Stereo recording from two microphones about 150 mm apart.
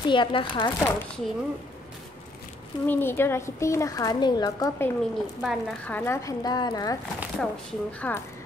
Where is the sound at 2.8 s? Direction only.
15° left (ahead or behind).